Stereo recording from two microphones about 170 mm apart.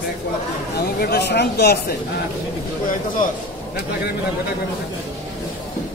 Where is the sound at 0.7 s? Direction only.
75° left (ahead or behind).